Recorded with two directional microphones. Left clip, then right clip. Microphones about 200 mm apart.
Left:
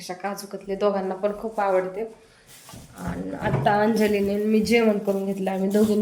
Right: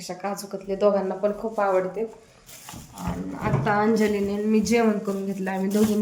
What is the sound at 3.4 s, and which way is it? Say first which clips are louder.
A woman's voice: left 2 dB; centre (ahead or behind).